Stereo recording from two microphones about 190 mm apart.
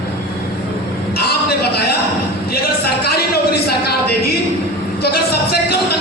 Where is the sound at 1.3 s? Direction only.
55° left (ahead or behind).